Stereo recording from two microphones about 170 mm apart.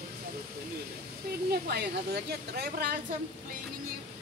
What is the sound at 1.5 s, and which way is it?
A woman's voice, 70° right (ahead or behind).